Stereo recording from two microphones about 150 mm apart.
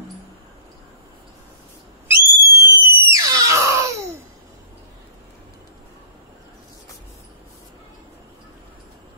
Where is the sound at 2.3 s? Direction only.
20° right (ahead or behind).